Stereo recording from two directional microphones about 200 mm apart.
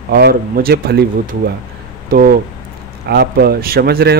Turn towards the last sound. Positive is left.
turn(degrees=-50)  # may be behind; listen again after turning